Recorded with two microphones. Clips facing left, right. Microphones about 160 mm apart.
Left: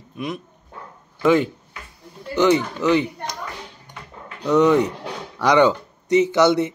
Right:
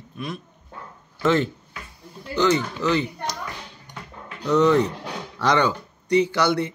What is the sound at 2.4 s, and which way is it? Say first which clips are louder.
Speech: left 3 dB; 20° left (ahead or behind).